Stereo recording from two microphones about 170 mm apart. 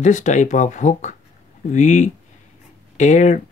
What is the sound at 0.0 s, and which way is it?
Speech, 45° left (ahead or behind).